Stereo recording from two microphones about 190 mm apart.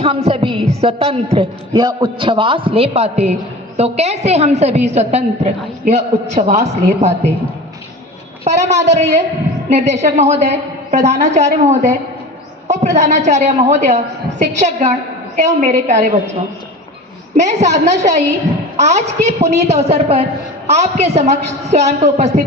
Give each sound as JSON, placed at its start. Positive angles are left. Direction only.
{"t": 0.0, "sound": "a man's voice", "side_deg": -35}
{"t": 8.4, "sound": "a man's voice", "side_deg": -35}
{"t": 17.3, "sound": "a man's voice", "side_deg": -40}